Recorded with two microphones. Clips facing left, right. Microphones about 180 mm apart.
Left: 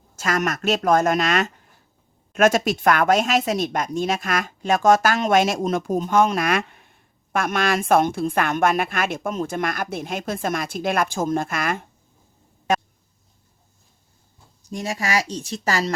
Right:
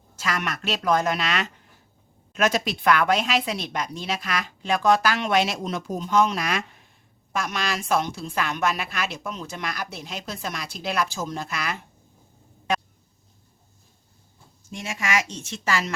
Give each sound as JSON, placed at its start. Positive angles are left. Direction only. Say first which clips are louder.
{"t": 0.2, "sound": "a woman's voice", "louder": "left 6 dB", "side_deg": 45}
{"t": 12.7, "sound": "a sound", "louder": "left 4 dB", "side_deg": 45}
{"t": 14.6, "sound": "a woman's voice", "louder": "left 5 dB", "side_deg": 40}